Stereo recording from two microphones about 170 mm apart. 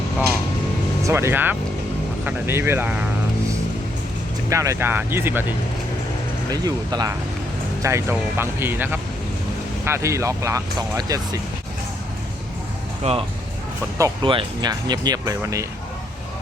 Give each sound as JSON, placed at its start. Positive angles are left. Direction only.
{"t": 1.0, "sound": "speech", "side_deg": -15}
{"t": 4.4, "sound": "speech", "side_deg": -20}
{"t": 6.5, "sound": "speech", "side_deg": -25}
{"t": 13.0, "sound": "speech", "side_deg": -40}
{"t": 14.0, "sound": "speech", "side_deg": -30}